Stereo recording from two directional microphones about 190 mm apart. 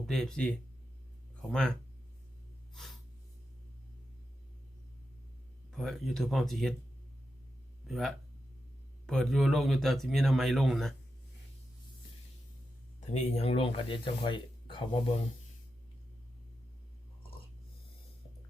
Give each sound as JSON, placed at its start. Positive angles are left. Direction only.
{"t": 0.0, "sound": "speech", "side_deg": 0}
{"t": 2.7, "sound": "snort", "side_deg": 0}
{"t": 5.7, "sound": "speech", "side_deg": 0}
{"t": 7.9, "sound": "speech", "side_deg": 0}
{"t": 13.1, "sound": "speech", "side_deg": 35}